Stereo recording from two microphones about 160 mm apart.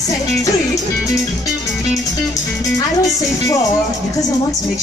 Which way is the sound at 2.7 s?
20° left (ahead or behind).